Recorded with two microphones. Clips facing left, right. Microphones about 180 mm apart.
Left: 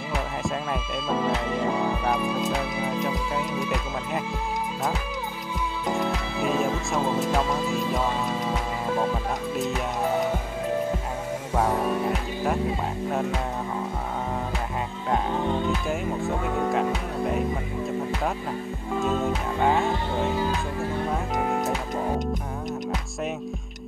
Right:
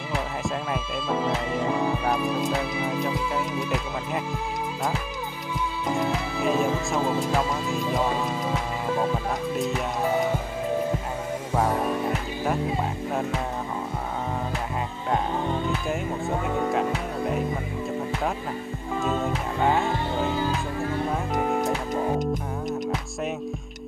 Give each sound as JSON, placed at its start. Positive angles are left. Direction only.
{"t": 1.0, "sound": "music", "side_deg": 0}
{"t": 5.9, "sound": "music", "side_deg": 0}
{"t": 11.5, "sound": "music", "side_deg": 0}
{"t": 15.0, "sound": "music", "side_deg": 0}
{"t": 18.9, "sound": "music", "side_deg": 0}